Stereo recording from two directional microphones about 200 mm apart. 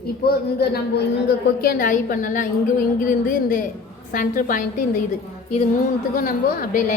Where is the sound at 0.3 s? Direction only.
50° left (ahead or behind).